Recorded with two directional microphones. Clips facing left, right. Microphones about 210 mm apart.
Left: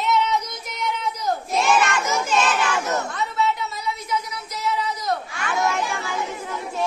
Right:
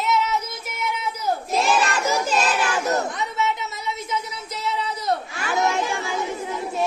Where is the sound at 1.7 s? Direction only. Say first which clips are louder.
Even; 30° right (ahead or behind).